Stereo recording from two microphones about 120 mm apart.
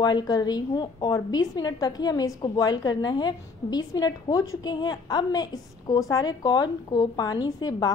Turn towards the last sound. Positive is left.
turn(degrees=35)  # may be behind; listen again after turning